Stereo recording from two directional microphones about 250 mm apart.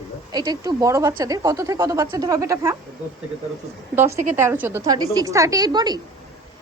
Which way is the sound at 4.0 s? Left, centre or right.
Centre.